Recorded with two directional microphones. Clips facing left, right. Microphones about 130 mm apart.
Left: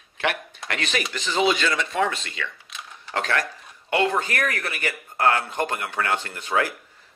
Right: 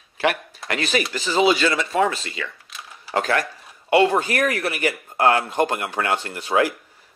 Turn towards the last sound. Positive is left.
turn(degrees=-10)  # may be behind; listen again after turning